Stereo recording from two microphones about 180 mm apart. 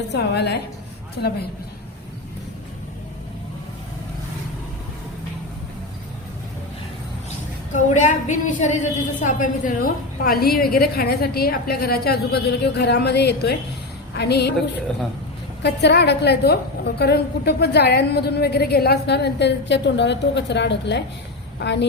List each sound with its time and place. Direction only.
0.1 s a woman's voice: 70° left (ahead or behind)
7.7 s a woman's voice: 45° left (ahead or behind); by 14.5 s 65° left (ahead or behind)
15.6 s a woman's voice: 65° left (ahead or behind)